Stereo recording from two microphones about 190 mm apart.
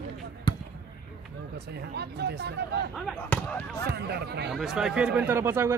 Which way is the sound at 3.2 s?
10° left (ahead or behind).